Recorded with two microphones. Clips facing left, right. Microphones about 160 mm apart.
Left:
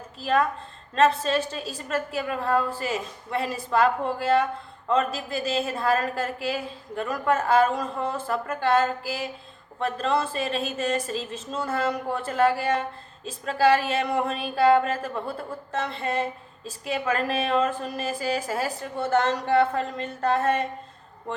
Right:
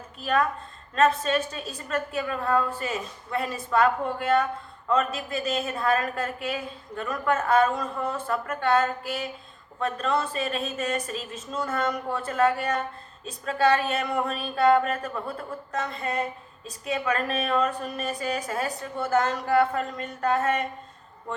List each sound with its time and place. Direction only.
0.2 s speech: 30° left (ahead or behind)